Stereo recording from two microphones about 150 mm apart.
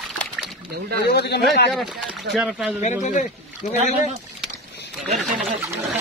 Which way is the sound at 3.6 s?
50° left (ahead or behind).